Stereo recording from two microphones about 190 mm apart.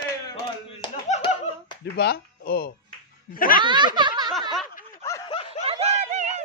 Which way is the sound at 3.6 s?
25° right (ahead or behind).